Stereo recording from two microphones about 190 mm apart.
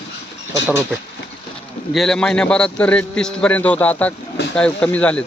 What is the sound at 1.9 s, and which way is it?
A man's voice, centre (ahead or behind).